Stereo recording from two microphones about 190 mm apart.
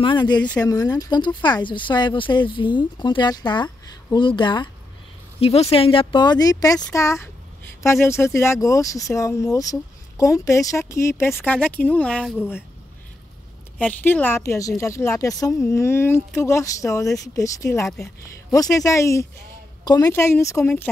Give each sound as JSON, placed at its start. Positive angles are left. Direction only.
{"t": 0.0, "sound": "speech", "side_deg": 25}
{"t": 13.7, "sound": "speech", "side_deg": 5}